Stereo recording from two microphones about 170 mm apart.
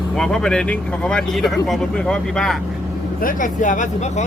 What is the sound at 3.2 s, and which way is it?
Speech, 50° left (ahead or behind).